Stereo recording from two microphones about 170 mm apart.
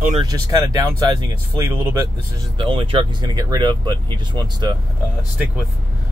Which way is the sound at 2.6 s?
30° right (ahead or behind).